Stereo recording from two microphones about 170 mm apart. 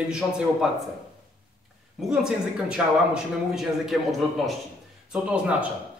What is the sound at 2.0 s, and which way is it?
Speech, 5° right (ahead or behind).